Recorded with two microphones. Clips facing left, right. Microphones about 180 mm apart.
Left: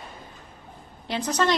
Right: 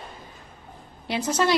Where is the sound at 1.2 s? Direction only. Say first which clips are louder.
Right 1 dB; 10° right (ahead or behind).